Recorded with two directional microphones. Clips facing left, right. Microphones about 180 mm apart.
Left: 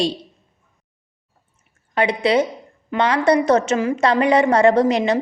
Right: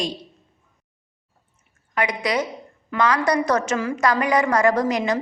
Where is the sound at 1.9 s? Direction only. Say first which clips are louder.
Left 6 dB; 30° left (ahead or behind).